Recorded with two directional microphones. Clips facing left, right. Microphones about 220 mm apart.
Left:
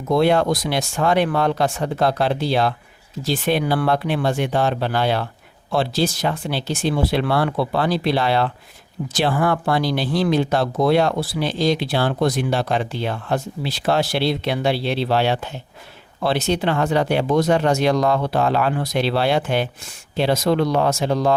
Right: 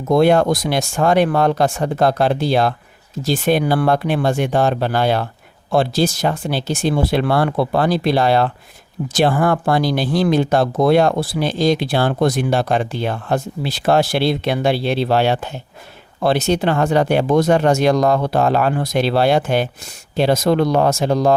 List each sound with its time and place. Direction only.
0.1 s speech: 45° right (ahead or behind)